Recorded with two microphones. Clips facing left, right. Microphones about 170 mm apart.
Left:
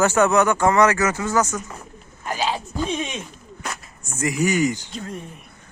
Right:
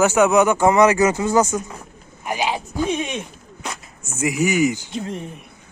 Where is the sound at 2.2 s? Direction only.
15° right (ahead or behind).